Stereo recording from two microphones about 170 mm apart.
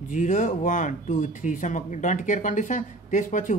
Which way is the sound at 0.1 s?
50° left (ahead or behind).